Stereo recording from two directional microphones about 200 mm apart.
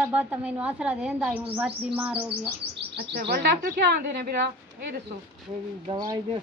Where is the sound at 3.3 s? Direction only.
50° right (ahead or behind).